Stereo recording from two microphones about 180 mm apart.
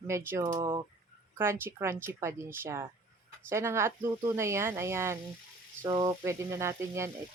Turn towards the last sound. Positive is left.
turn(degrees=-15)  # may be behind; listen again after turning